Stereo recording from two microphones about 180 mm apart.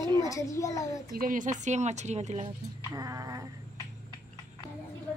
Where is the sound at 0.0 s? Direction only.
25° right (ahead or behind).